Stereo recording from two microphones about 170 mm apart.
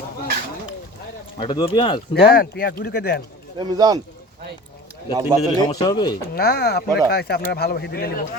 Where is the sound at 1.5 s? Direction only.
30° left (ahead or behind).